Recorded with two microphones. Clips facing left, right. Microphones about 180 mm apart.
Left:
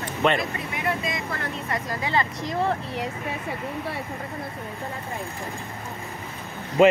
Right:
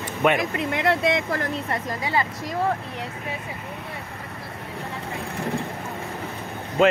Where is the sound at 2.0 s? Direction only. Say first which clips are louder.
Left 1 dB; 10° right (ahead or behind).